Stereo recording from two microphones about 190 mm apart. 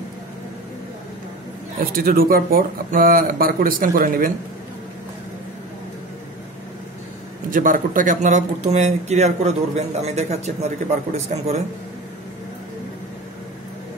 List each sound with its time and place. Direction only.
1.8 s speech: 50° right (ahead or behind)
7.5 s speech: 45° right (ahead or behind)